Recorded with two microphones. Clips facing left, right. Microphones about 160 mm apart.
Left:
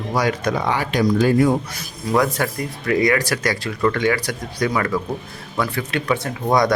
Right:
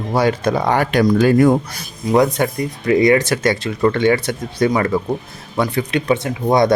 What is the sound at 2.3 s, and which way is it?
Speech, 20° right (ahead or behind).